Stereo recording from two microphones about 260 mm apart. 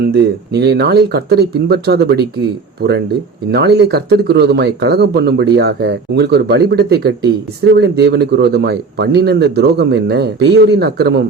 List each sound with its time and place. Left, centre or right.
0.0 s speech: right
3.5 s speech: right